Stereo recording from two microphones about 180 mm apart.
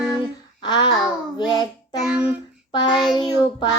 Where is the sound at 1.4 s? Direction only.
20° left (ahead or behind).